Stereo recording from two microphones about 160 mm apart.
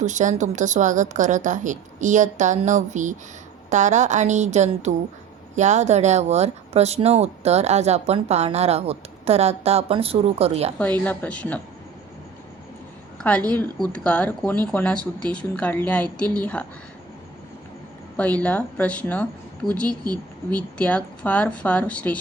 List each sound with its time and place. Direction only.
0.0 s speech: 50° right (ahead or behind)
10.8 s speech: 10° left (ahead or behind)
13.1 s a woman's voice: 10° left (ahead or behind)
18.2 s speech: 10° left (ahead or behind)